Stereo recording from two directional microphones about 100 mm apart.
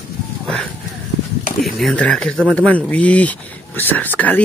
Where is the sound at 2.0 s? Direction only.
10° left (ahead or behind).